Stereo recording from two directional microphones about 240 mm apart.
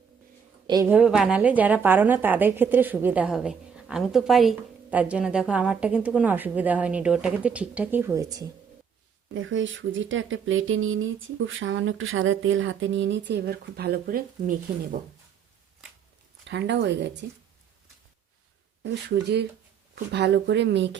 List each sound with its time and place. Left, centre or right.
0.7 s a woman's voice: centre
9.3 s speech: right
16.5 s speech: right
18.8 s speech: right